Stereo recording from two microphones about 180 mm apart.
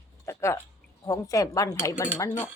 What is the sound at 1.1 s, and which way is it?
A man's voice, 20° left (ahead or behind).